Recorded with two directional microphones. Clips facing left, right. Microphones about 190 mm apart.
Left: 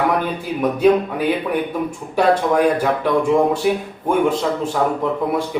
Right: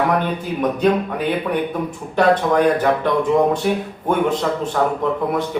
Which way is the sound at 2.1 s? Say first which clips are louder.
Even; 10° left (ahead or behind).